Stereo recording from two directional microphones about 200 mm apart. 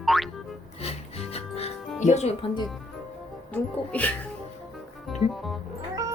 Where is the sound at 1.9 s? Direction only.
35° left (ahead or behind).